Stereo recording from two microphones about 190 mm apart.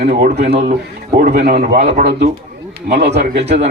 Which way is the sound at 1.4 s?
55° right (ahead or behind).